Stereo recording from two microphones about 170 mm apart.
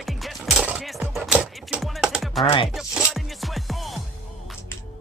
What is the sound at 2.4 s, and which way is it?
Speech, 35° left (ahead or behind).